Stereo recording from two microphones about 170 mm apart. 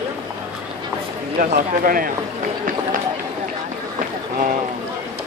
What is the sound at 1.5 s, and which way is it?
Speech, 55° right (ahead or behind).